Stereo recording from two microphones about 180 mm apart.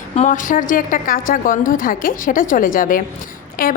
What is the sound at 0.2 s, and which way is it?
A woman's voice, 45° left (ahead or behind).